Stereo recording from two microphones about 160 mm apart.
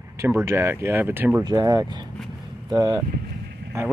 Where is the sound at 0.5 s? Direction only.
15° right (ahead or behind).